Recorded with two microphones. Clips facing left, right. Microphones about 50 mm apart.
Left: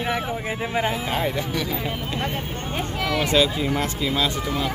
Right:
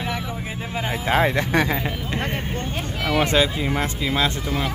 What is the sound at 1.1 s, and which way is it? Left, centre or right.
Speech, right.